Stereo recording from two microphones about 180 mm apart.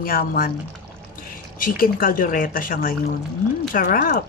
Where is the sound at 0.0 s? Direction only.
55° left (ahead or behind).